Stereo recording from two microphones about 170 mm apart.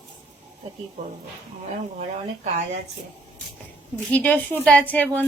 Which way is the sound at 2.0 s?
40° right (ahead or behind).